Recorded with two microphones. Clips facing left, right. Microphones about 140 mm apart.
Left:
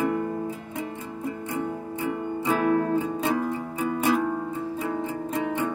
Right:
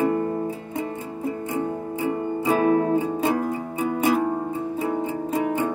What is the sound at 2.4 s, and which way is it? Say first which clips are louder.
Music: right 3 dB; 20° right (ahead or behind).